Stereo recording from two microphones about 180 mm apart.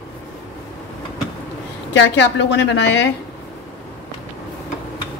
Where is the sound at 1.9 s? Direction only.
90° left.